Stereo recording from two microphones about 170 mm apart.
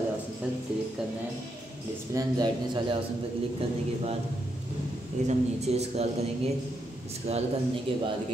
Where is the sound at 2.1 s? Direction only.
25° right (ahead or behind).